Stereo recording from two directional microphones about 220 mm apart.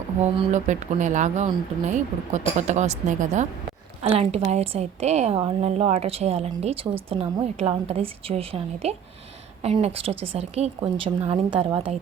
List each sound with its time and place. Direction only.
0.2 s a woman's voice: 30° right (ahead or behind)